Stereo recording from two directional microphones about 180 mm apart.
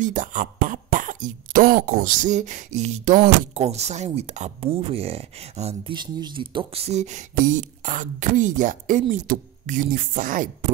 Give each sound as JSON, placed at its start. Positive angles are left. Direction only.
{"t": 0.0, "sound": "speech", "side_deg": -45}